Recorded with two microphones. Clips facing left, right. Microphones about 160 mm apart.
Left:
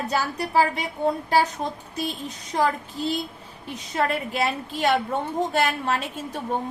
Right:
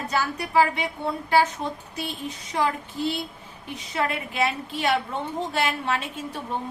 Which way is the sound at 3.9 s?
40° left (ahead or behind).